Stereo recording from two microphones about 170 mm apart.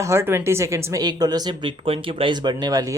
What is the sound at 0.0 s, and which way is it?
Speech, 15° right (ahead or behind).